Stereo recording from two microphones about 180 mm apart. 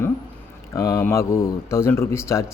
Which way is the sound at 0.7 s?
15° left (ahead or behind).